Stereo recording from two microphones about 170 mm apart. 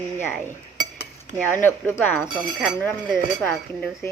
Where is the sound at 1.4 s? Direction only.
10° left (ahead or behind).